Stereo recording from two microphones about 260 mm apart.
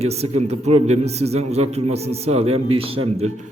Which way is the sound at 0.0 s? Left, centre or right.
Right.